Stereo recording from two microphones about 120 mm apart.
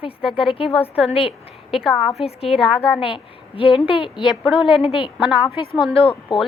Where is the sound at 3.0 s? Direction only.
50° left (ahead or behind).